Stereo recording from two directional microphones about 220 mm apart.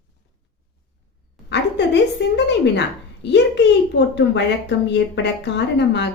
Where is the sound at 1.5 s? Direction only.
50° left (ahead or behind).